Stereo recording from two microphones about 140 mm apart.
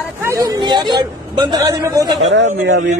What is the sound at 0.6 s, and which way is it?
A man's voice, 35° right (ahead or behind).